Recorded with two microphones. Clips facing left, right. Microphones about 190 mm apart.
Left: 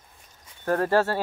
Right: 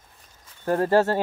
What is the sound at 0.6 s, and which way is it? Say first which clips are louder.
Speech: right 2 dB; 15° right (ahead or behind).